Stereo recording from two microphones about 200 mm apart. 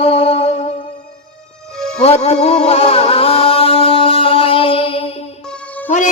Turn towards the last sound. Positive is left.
turn(degrees=5)  # may be behind; listen again after turning